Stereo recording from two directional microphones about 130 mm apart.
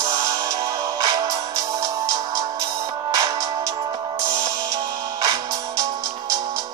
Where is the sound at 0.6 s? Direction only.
25° right (ahead or behind).